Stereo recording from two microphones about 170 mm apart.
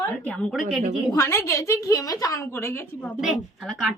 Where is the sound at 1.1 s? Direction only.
15° left (ahead or behind).